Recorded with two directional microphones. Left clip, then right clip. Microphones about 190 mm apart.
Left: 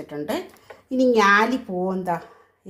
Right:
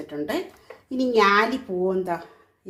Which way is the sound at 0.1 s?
20° left (ahead or behind).